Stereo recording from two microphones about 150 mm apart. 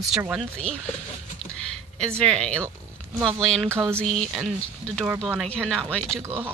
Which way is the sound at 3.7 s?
15° right (ahead or behind).